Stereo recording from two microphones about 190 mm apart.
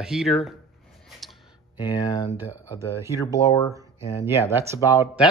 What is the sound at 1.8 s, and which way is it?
Speech, 20° left (ahead or behind).